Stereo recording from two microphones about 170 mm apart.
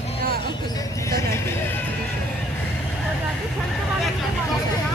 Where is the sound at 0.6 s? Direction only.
20° left (ahead or behind).